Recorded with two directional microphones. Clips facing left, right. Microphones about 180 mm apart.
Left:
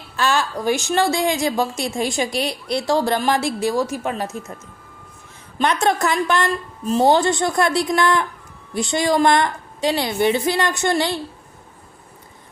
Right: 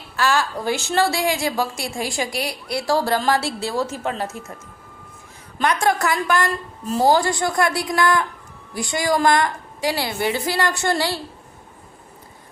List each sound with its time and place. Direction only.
0.2 s a woman's voice: 20° left (ahead or behind)
5.5 s a woman's voice: 20° left (ahead or behind)